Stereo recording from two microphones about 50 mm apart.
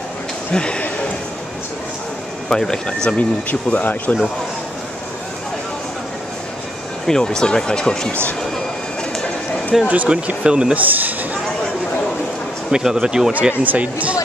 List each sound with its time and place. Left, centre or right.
0.5 s speech: left
2.5 s speech: centre
3.2 s speech: left
7.1 s speech: centre
9.7 s speech: centre
10.8 s speech: right
12.7 s speech: centre
13.3 s speech: right